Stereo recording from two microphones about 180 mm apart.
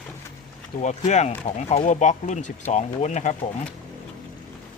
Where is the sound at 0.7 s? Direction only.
40° left (ahead or behind).